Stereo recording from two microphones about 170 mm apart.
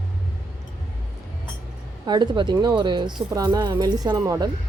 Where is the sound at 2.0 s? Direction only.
25° right (ahead or behind).